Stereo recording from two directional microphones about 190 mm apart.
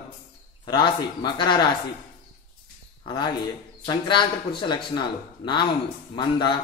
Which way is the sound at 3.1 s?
20° left (ahead or behind).